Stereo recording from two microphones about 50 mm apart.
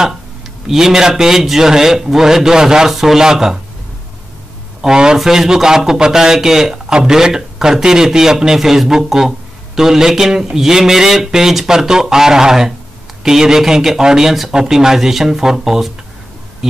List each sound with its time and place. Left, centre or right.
0.7 s a man's voice: centre
4.8 s a man's voice: centre